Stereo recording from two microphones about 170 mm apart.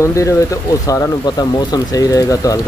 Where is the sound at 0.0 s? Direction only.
20° left (ahead or behind).